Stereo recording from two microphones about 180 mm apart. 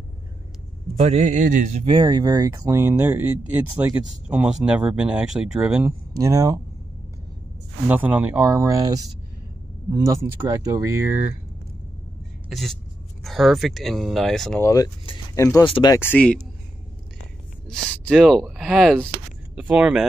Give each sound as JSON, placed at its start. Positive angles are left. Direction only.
{"t": 1.0, "sound": "speech", "side_deg": -40}
{"t": 1.9, "sound": "speech", "side_deg": -25}
{"t": 6.2, "sound": "speech", "side_deg": -20}
{"t": 7.9, "sound": "speech", "side_deg": -10}
{"t": 12.4, "sound": "speech", "side_deg": 0}
{"t": 14.6, "sound": "speech", "side_deg": 20}
{"t": 16.0, "sound": "speech", "side_deg": 10}
{"t": 17.6, "sound": "speech", "side_deg": 5}